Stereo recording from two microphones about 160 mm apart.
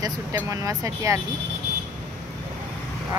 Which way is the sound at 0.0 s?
20° right (ahead or behind).